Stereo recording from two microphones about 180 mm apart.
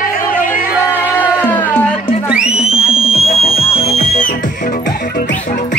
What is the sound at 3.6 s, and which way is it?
Music, 35° left (ahead or behind).